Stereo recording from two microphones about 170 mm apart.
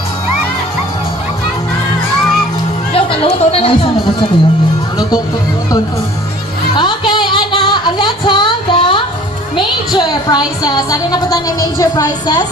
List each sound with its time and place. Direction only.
2.9 s music: 35° left (ahead or behind)
6.7 s music: 25° left (ahead or behind)
9.9 s a woman's voice: 25° left (ahead or behind)